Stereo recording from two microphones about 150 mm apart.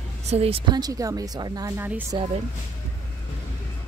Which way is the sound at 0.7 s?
25° right (ahead or behind).